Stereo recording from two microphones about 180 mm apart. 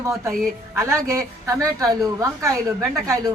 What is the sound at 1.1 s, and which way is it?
A woman's voice, 20° right (ahead or behind).